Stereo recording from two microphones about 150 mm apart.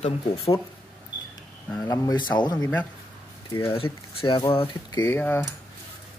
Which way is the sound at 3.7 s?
40° left (ahead or behind).